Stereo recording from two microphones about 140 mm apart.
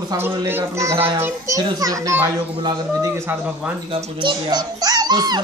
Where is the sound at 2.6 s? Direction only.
30° right (ahead or behind).